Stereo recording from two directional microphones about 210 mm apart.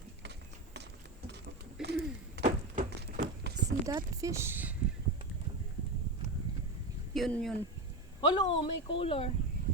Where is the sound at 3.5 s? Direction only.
50° right (ahead or behind).